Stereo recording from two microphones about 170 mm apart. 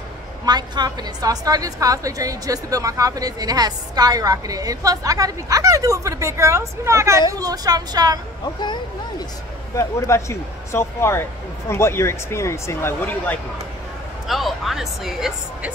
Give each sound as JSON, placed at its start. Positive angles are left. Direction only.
{"t": 0.5, "sound": "a woman's voice", "side_deg": -25}
{"t": 9.8, "sound": "speech", "side_deg": 15}
{"t": 14.2, "sound": "speech", "side_deg": 0}